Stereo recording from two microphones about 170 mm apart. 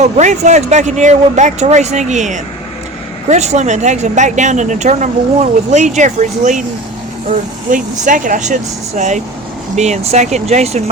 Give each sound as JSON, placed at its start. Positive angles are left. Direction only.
{"t": 0.0, "sound": "speech", "side_deg": -45}